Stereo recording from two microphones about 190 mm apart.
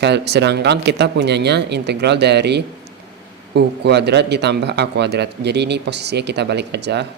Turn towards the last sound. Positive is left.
turn(degrees=-60)  # may be behind; listen again after turning